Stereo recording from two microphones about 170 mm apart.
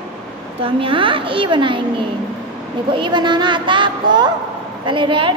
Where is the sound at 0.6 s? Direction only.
30° right (ahead or behind).